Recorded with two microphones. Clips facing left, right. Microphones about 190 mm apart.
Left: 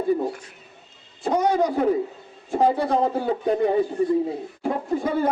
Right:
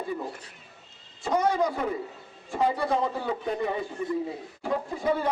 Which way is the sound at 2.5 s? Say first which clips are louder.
Left 5 dB; 40° left (ahead or behind).